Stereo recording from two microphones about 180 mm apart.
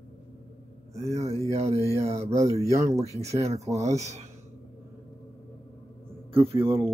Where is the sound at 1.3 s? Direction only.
15° right (ahead or behind).